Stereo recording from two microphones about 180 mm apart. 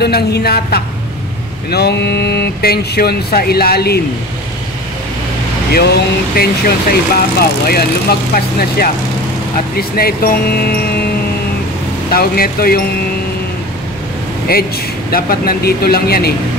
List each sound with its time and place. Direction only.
0.0 s speech: 60° left (ahead or behind)
5.7 s speech: 60° left (ahead or behind)
12.1 s speech: 55° left (ahead or behind)
14.5 s speech: 60° left (ahead or behind)